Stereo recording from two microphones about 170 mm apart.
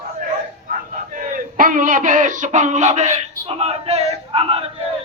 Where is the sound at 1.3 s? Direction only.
55° right (ahead or behind); by 4.7 s 35° right (ahead or behind).